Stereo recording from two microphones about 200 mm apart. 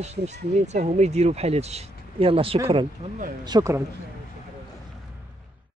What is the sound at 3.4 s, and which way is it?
Speech, 15° right (ahead or behind).